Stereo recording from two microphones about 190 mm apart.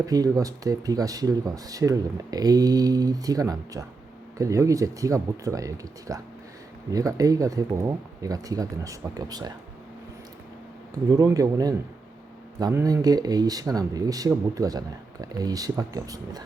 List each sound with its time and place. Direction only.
0.0 s speech: 20° right (ahead or behind)
10.9 s speech: 20° right (ahead or behind)